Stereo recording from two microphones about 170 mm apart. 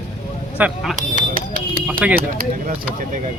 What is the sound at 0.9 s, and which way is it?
Speech, 50° right (ahead or behind).